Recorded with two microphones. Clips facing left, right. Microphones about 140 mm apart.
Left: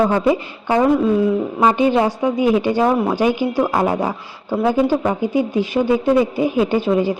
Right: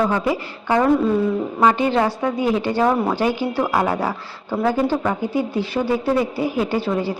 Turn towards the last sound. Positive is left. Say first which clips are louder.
# left 5 dB
turn(degrees=15)  # may be behind; listen again after turning